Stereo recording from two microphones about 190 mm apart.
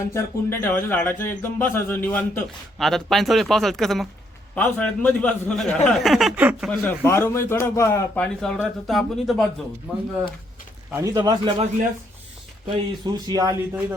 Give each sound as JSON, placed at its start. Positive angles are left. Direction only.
{"t": 0.0, "sound": "a man's voice", "side_deg": 10}
{"t": 6.7, "sound": "a man's voice", "side_deg": 10}
{"t": 10.9, "sound": "a man's voice", "side_deg": -20}
{"t": 13.1, "sound": "a man's voice", "side_deg": -20}